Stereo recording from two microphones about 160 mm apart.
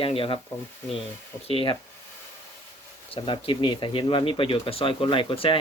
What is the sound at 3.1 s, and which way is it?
Speech, 35° left (ahead or behind).